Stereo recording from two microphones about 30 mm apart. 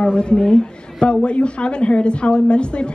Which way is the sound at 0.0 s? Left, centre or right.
Left.